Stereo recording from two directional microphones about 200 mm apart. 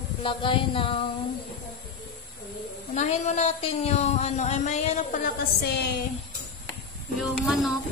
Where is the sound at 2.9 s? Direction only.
35° left (ahead or behind).